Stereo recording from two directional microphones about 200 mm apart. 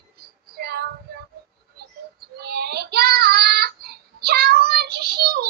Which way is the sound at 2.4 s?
55° right (ahead or behind).